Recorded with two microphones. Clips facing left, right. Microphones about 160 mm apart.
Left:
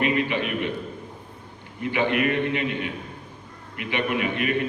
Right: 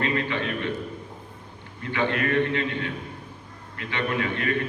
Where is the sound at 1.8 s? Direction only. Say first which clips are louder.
Left 3 dB; 15° left (ahead or behind).